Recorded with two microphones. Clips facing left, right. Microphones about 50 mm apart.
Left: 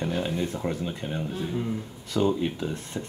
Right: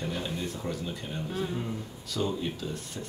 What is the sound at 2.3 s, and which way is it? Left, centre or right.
Speech, left.